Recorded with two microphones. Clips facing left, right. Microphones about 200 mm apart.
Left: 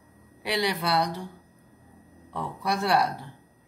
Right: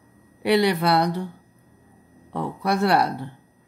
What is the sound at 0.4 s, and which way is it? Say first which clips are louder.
Speech: right 8 dB; 60° right (ahead or behind).